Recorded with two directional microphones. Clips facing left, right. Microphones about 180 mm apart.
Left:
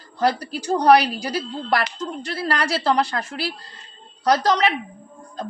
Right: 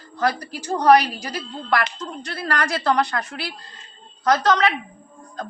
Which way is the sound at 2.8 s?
30° left (ahead or behind).